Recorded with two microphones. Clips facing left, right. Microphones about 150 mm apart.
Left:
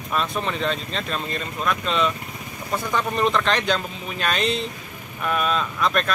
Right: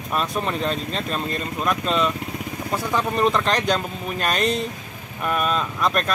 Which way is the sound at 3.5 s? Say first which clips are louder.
Right 1 dB; 40° right (ahead or behind).